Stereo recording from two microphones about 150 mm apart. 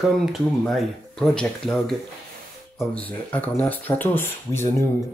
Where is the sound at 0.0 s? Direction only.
Centre (ahead or behind).